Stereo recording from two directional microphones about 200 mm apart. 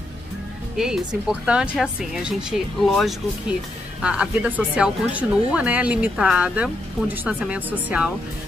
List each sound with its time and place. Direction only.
0.7 s speech: centre (ahead or behind)